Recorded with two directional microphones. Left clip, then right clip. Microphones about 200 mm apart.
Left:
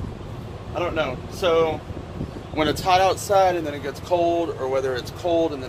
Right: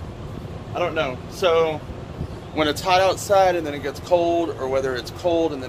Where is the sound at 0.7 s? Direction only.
10° right (ahead or behind).